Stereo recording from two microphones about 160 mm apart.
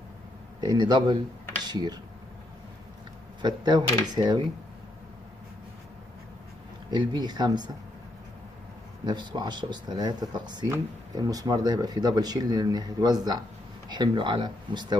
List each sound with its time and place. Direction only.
0.6 s speech: 25° right (ahead or behind)
3.4 s speech: 25° right (ahead or behind)
6.9 s speech: 25° right (ahead or behind)
9.0 s speech: 25° right (ahead or behind)